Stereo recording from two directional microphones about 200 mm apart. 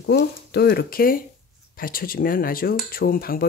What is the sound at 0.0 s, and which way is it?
Speech, 55° left (ahead or behind).